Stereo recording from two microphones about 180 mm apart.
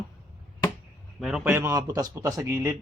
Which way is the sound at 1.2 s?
10° right (ahead or behind).